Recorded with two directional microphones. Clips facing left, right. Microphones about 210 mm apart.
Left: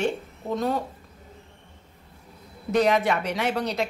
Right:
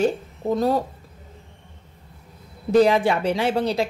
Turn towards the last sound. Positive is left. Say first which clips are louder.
# right 4 dB
turn(degrees=-30)  # may be behind; listen again after turning